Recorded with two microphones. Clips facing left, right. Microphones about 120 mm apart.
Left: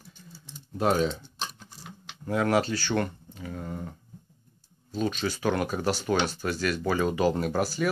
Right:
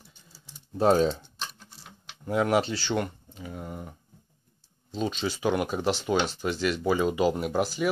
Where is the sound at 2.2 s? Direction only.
20° right (ahead or behind).